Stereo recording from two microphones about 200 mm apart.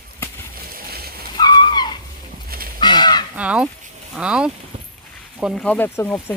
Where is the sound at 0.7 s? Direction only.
50° right (ahead or behind).